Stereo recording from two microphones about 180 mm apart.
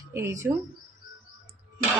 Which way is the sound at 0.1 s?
15° right (ahead or behind).